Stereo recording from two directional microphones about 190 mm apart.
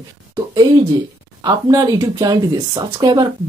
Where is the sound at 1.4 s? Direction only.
20° right (ahead or behind).